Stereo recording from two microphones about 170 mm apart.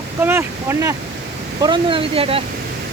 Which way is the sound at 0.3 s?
15° right (ahead or behind).